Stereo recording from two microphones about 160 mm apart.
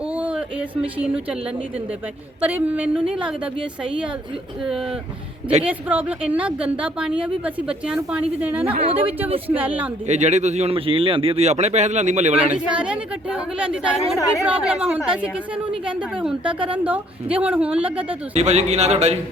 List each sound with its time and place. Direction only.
0.1 s a sound: 10° right (ahead or behind)
2.4 s a woman's voice: 10° right (ahead or behind)
5.6 s a woman's voice: 10° right (ahead or behind)
8.6 s speech: 35° right (ahead or behind)
9.0 s a woman's voice: 10° right (ahead or behind)
10.1 s speech: 45° right (ahead or behind)
12.5 s a woman's voice: 5° right (ahead or behind)
14.2 s speech: 20° left (ahead or behind)
14.4 s a woman's voice: 5° right (ahead or behind)
18.1 s speech: 45° right (ahead or behind)